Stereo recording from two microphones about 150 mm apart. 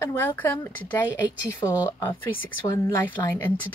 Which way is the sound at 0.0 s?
15° left (ahead or behind).